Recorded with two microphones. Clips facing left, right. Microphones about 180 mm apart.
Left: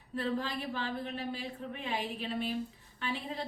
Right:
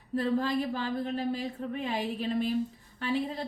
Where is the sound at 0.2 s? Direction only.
40° right (ahead or behind).